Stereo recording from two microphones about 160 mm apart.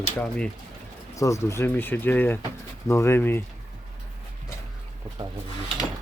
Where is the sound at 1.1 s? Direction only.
20° left (ahead or behind).